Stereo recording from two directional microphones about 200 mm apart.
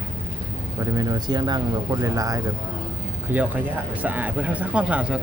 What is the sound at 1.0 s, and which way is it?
Speech, 20° right (ahead or behind).